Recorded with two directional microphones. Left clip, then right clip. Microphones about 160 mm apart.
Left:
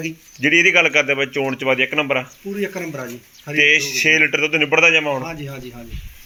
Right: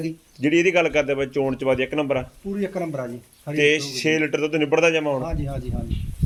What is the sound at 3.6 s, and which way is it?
Speech, 10° right (ahead or behind).